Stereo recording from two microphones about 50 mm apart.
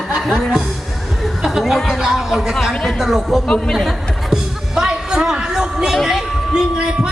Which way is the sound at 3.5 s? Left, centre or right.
Centre.